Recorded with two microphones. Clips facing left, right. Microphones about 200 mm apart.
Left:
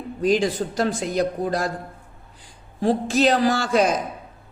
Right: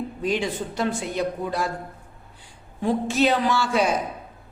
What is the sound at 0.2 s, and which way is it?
Speech, 40° left (ahead or behind).